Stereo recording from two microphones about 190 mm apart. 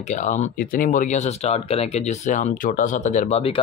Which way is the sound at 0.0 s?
40° left (ahead or behind).